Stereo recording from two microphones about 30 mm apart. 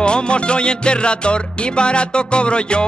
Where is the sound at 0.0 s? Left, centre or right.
Left.